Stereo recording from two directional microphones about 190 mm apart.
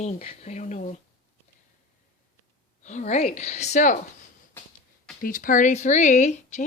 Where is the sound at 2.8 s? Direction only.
40° left (ahead or behind).